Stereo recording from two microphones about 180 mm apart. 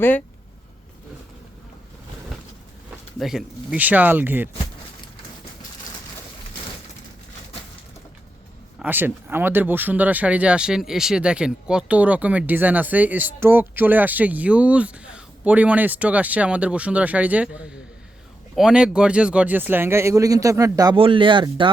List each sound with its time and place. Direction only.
3.2 s speech: centre (ahead or behind)
8.8 s speech: 10° right (ahead or behind); by 21.7 s 25° right (ahead or behind)